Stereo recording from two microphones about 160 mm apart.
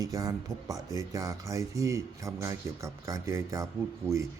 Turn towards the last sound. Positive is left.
turn(degrees=-20)  # may be behind; listen again after turning